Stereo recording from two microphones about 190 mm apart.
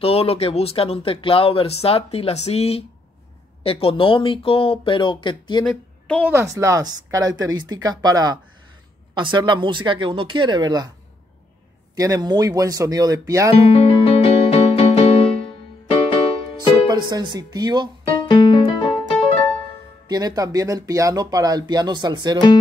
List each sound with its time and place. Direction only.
0.0 s speech: 30° left (ahead or behind)
5.7 s a woman's voice: 5° left (ahead or behind)
6.3 s speech: 15° right (ahead or behind)
11.9 s speech: 20° right (ahead or behind)
13.7 s music: 30° left (ahead or behind)
16.9 s speech: 20° right (ahead or behind)
18.1 s music: 25° left (ahead or behind)
20.1 s speech: 20° right (ahead or behind)